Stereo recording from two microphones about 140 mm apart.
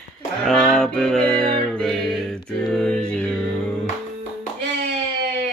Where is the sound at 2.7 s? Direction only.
5° left (ahead or behind).